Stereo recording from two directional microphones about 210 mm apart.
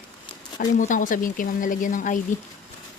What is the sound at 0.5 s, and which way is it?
Speech, 40° left (ahead or behind).